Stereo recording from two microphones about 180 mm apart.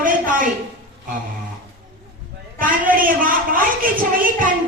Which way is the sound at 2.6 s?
50° right (ahead or behind).